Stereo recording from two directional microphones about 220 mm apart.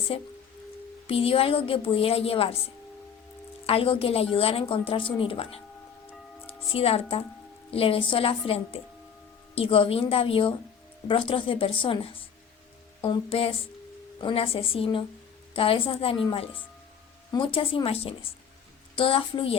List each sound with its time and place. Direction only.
0.1 s a woman's voice: 25° left (ahead or behind)
3.7 s a woman's voice: 25° left (ahead or behind)
13.3 s a woman's voice: 25° left (ahead or behind)